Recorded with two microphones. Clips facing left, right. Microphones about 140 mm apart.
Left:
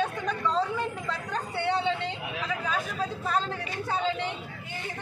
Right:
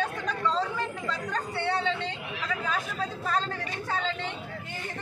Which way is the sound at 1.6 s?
15° left (ahead or behind).